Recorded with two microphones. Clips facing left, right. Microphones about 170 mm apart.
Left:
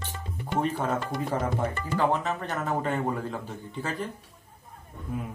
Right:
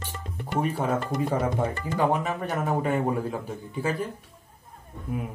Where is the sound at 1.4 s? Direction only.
15° right (ahead or behind).